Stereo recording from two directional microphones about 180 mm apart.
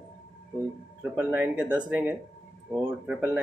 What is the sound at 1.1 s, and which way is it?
Speech, 10° right (ahead or behind).